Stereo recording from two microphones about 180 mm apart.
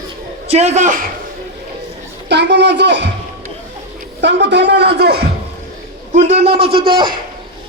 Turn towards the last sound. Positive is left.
turn(degrees=-60)  # may be behind; listen again after turning